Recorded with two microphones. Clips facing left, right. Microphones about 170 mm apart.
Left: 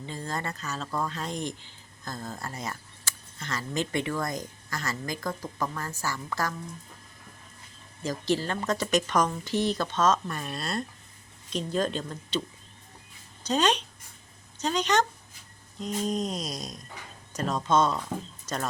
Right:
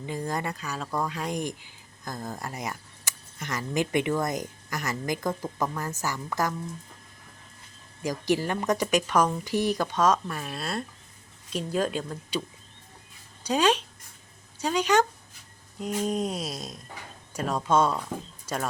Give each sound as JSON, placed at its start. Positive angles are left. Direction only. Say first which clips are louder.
{"t": 0.0, "sound": "speech", "louder": "right 3 dB", "side_deg": -15}
{"t": 8.0, "sound": "speech", "louder": "right 2 dB", "side_deg": -15}
{"t": 13.4, "sound": "speech", "louder": "right 2 dB", "side_deg": -10}